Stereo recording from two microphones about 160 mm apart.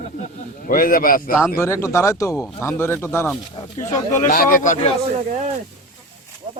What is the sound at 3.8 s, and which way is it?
Speech, 50° left (ahead or behind).